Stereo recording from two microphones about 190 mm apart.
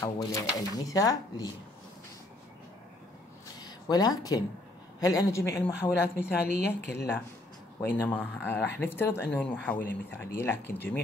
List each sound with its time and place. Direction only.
0.0 s a woman's voice: 15° left (ahead or behind)
3.6 s a woman's voice: 20° left (ahead or behind)
8.4 s a woman's voice: 10° left (ahead or behind)